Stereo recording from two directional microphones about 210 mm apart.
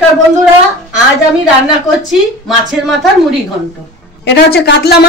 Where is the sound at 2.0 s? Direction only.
Centre (ahead or behind).